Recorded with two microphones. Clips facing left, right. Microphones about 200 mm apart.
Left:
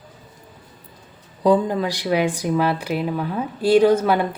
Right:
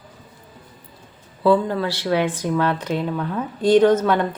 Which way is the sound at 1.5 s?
15° left (ahead or behind).